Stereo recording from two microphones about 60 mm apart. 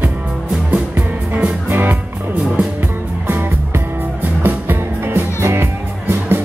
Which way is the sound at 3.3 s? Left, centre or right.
Right.